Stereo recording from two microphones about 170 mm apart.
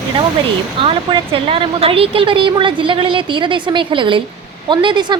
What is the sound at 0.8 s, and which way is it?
A woman's voice, 30° right (ahead or behind).